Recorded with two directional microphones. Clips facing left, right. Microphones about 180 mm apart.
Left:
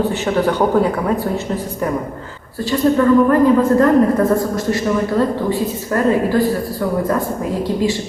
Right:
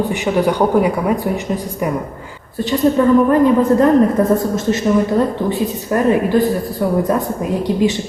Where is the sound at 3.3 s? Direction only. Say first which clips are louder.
Even; 20° right (ahead or behind).